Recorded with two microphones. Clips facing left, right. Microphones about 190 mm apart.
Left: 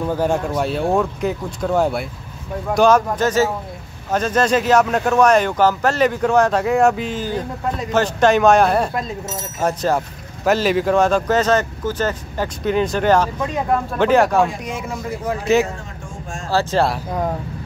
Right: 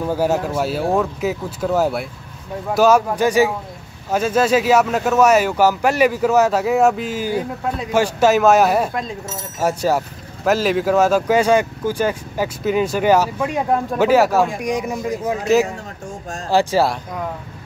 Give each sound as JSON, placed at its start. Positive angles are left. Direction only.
{"t": 0.0, "sound": "speech", "side_deg": -5}
{"t": 14.7, "sound": "speech", "side_deg": -15}
{"t": 16.4, "sound": "speech", "side_deg": -15}